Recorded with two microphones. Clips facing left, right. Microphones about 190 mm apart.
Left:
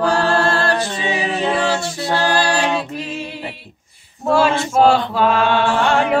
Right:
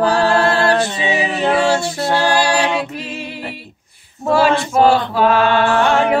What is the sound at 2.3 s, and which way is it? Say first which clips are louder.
A capella: right 2 dB; 5° right (ahead or behind).